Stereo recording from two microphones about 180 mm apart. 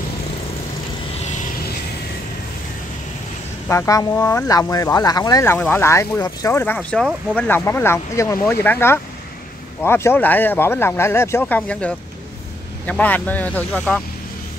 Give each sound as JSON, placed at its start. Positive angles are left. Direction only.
{"t": 3.6, "sound": "speech", "side_deg": 15}